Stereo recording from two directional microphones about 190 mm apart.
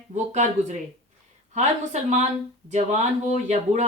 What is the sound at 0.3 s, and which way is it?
Speech, 40° right (ahead or behind).